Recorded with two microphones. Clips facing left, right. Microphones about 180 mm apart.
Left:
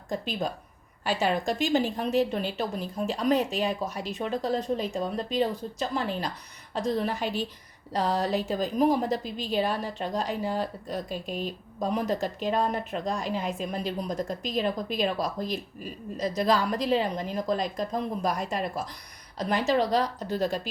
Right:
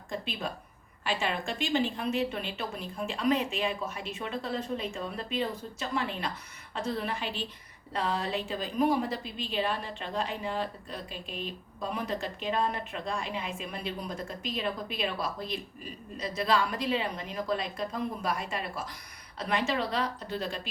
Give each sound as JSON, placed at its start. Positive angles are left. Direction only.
{"t": 0.1, "sound": "a woman's voice", "side_deg": 40}